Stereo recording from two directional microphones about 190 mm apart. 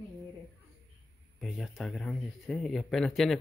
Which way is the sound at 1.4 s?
Centre (ahead or behind).